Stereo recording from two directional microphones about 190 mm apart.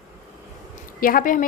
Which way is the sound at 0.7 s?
45° left (ahead or behind).